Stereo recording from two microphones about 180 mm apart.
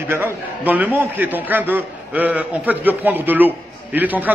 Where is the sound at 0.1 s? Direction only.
10° right (ahead or behind).